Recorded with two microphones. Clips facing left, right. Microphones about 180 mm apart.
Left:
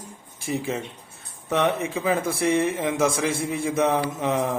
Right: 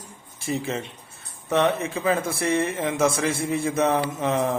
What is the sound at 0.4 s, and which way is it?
Speech, 15° left (ahead or behind).